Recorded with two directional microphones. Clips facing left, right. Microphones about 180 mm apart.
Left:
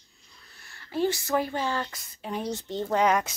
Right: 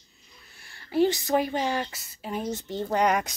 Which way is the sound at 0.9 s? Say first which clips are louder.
Right 3 dB; 20° right (ahead or behind).